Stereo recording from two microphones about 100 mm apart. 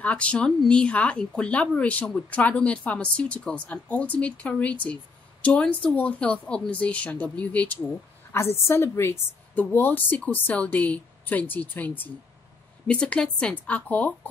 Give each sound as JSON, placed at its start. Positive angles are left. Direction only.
{"t": 0.0, "sound": "speech", "side_deg": 10}